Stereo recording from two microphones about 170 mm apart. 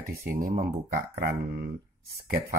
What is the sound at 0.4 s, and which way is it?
Speech, 55° right (ahead or behind).